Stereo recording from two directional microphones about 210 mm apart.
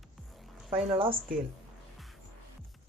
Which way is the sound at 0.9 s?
25° right (ahead or behind).